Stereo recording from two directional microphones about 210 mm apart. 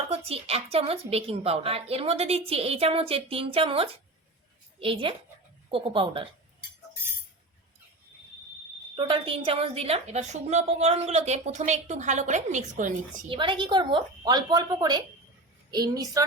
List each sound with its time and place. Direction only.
0.1 s a woman's voice: 30° right (ahead or behind)
9.0 s a woman's voice: 25° right (ahead or behind)
13.3 s a woman's voice: 25° right (ahead or behind)